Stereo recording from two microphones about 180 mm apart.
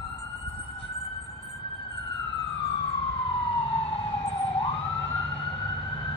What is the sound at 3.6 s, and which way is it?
Emergency vehicle, 35° left (ahead or behind).